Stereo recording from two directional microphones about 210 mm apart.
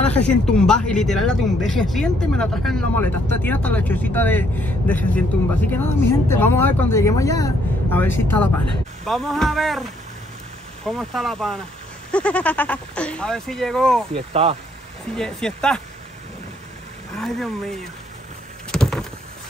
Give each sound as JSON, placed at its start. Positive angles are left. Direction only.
{"t": 0.0, "sound": "speech", "side_deg": 5}
{"t": 9.0, "sound": "speech", "side_deg": 0}
{"t": 14.1, "sound": "speech", "side_deg": -30}
{"t": 15.1, "sound": "speech", "side_deg": 5}
{"t": 17.2, "sound": "speech", "side_deg": 0}
{"t": 18.7, "sound": "vehicle", "side_deg": 0}